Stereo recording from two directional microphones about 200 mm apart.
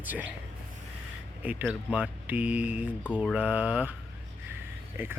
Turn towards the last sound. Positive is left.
turn(degrees=-10)  # may be behind; listen again after turning